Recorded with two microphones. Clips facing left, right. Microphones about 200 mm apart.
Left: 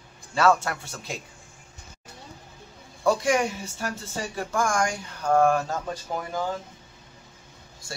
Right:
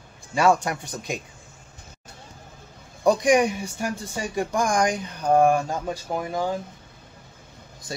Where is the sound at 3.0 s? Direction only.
15° right (ahead or behind).